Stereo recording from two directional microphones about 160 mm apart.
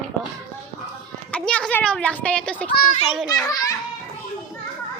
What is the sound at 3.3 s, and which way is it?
Speech, 25° left (ahead or behind).